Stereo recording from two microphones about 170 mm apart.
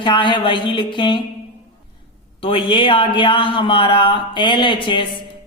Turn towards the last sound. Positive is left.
turn(degrees=30)  # may be behind; listen again after turning